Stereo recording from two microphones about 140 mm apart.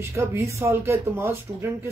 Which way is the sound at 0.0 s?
20° right (ahead or behind).